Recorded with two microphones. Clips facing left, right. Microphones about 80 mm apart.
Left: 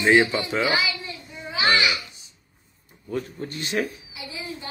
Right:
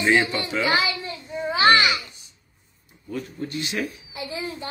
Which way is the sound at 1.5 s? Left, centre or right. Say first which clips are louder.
Right 4 dB; right.